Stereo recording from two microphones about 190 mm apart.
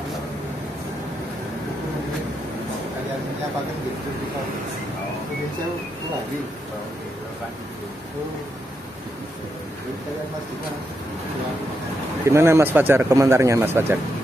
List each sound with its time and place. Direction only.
12.3 s speech: 15° right (ahead or behind)